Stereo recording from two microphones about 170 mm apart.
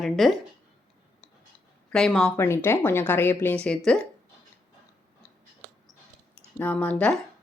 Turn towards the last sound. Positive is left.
turn(degrees=5)  # may be behind; listen again after turning